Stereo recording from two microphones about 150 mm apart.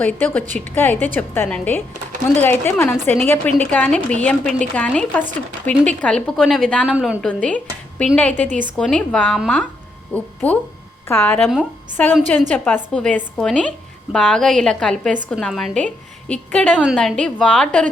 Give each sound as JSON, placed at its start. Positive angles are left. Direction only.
{"t": 0.0, "sound": "a woman's voice", "side_deg": 10}
{"t": 6.8, "sound": "a woman's voice", "side_deg": -10}
{"t": 7.2, "sound": "a woman's voice", "side_deg": 5}
{"t": 8.4, "sound": "a woman's voice", "side_deg": -60}
{"t": 8.8, "sound": "a woman's voice", "side_deg": 5}
{"t": 12.0, "sound": "a woman's voice", "side_deg": 10}
{"t": 16.7, "sound": "a woman's voice", "side_deg": -5}